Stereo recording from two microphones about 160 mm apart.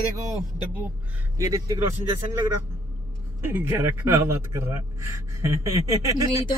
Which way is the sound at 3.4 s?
15° right (ahead or behind).